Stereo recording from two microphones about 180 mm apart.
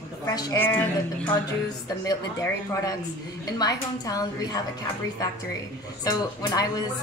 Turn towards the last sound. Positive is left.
turn(degrees=20)  # may be behind; listen again after turning